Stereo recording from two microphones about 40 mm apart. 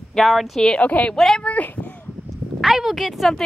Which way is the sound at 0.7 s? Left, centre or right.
Left.